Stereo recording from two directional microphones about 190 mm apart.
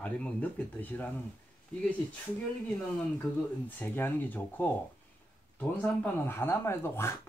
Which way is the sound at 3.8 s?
10° left (ahead or behind).